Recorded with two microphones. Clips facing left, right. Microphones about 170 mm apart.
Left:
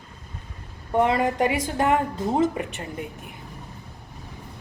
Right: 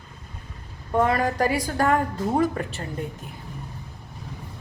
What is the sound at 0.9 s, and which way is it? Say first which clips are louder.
A woman's voice: left 1 dB; 20° left (ahead or behind).